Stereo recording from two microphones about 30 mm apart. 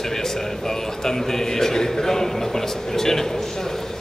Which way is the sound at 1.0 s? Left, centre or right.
Centre.